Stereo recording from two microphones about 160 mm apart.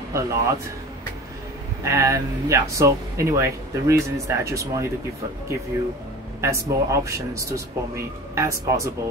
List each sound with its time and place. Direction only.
0.1 s speech: 20° right (ahead or behind)
1.8 s speech: 20° right (ahead or behind)
6.4 s speech: 20° right (ahead or behind)